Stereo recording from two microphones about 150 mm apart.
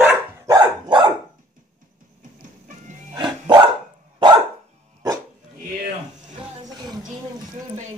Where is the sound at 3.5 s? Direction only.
30° right (ahead or behind).